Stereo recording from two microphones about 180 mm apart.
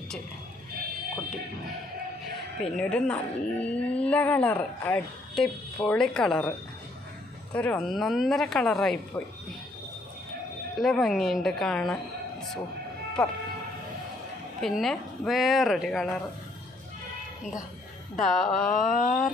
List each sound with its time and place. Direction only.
2.6 s a woman's voice: 5° left (ahead or behind)
7.5 s a woman's voice: 10° left (ahead or behind)
10.8 s a woman's voice: centre (ahead or behind)
13.2 s a woman's voice: 5° left (ahead or behind)
14.6 s a woman's voice: centre (ahead or behind)
18.1 s a woman's voice: centre (ahead or behind)
18.7 s mantra: 45° left (ahead or behind)